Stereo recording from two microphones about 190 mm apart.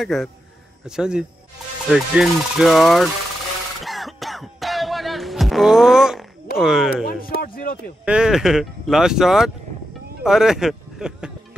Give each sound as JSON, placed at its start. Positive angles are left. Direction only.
{"t": 0.0, "sound": "speech", "side_deg": 0}
{"t": 3.8, "sound": "throat clearing", "side_deg": 0}
{"t": 6.6, "sound": "speech", "side_deg": 0}
{"t": 7.1, "sound": "a sound", "side_deg": 50}
{"t": 8.0, "sound": "speech", "side_deg": -5}